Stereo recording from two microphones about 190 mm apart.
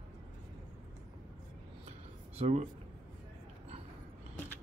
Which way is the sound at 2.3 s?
35° right (ahead or behind).